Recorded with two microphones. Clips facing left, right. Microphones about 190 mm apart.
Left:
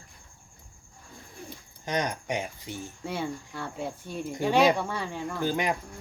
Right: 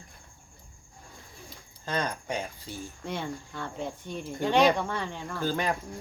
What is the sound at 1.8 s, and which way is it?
Speech, 15° left (ahead or behind).